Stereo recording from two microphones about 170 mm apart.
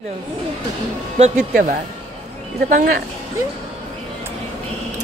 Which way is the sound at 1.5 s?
55° right (ahead or behind).